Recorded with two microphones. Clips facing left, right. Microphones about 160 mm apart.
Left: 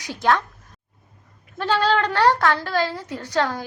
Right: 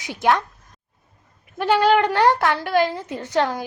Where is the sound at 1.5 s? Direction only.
15° right (ahead or behind).